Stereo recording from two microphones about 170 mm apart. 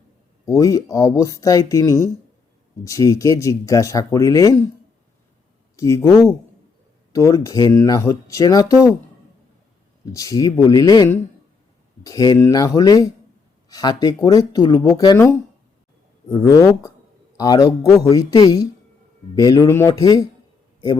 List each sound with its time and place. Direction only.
0.4 s speech: 20° left (ahead or behind)
5.7 s speech: 20° left (ahead or behind)
10.1 s speech: 20° left (ahead or behind)